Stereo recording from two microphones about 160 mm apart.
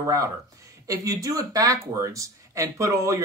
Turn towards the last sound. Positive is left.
turn(degrees=-20)  # may be behind; listen again after turning